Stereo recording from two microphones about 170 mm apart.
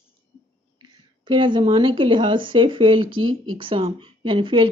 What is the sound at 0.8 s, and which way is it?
Speech, 30° right (ahead or behind).